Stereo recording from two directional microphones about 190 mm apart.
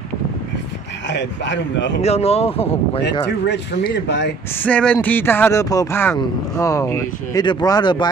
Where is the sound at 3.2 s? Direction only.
65° left (ahead or behind).